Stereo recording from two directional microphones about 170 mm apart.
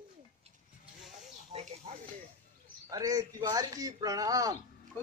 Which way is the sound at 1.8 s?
35° right (ahead or behind).